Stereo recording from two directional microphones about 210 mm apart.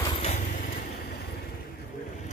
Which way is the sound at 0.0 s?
25° left (ahead or behind).